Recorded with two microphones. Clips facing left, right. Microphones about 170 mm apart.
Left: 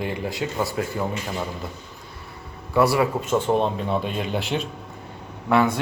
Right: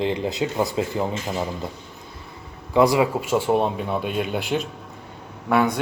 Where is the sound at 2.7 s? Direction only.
15° right (ahead or behind).